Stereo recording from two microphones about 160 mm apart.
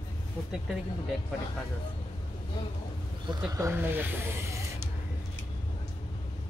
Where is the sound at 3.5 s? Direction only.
15° right (ahead or behind).